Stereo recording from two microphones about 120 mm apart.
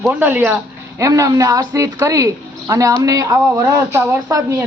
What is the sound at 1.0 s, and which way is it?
A woman's voice, 25° right (ahead or behind).